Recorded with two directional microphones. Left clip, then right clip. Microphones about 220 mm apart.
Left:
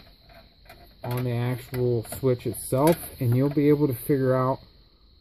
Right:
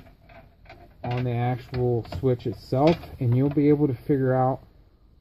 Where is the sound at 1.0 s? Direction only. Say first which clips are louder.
Right 2 dB; 25° left (ahead or behind).